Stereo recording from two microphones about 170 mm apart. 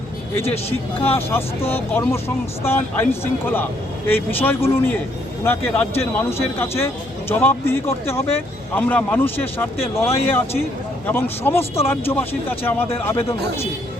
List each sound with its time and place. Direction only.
0.4 s speech: 35° left (ahead or behind)
1.0 s speech: 15° left (ahead or behind)
6.0 s speech: 15° left (ahead or behind)